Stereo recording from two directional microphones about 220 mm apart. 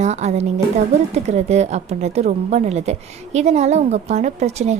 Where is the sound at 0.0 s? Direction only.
30° right (ahead or behind).